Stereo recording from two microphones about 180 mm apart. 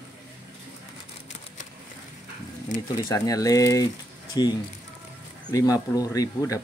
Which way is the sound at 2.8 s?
20° left (ahead or behind).